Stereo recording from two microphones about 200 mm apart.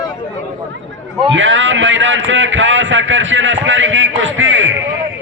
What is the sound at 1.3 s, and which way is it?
A man's voice, 70° right (ahead or behind).